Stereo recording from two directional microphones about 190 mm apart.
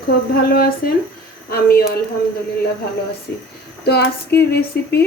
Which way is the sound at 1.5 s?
55° left (ahead or behind).